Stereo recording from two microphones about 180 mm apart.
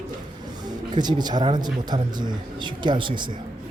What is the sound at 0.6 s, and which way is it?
Speech, 25° right (ahead or behind).